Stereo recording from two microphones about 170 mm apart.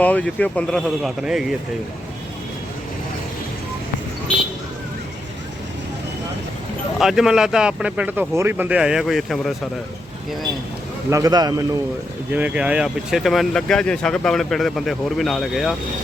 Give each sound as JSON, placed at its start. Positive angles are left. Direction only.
{"t": 0.0, "sound": "speech", "side_deg": 10}
{"t": 7.0, "sound": "speech", "side_deg": 0}
{"t": 11.1, "sound": "a man's voice", "side_deg": -20}
{"t": 12.3, "sound": "speech", "side_deg": -10}